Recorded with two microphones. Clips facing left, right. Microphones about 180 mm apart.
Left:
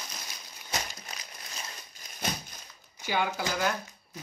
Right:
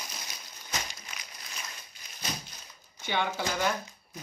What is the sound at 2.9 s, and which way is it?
Speech, 5° left (ahead or behind).